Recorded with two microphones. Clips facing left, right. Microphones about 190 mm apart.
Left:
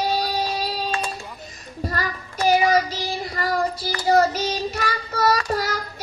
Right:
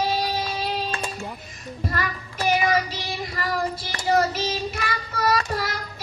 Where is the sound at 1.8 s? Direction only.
40° left (ahead or behind).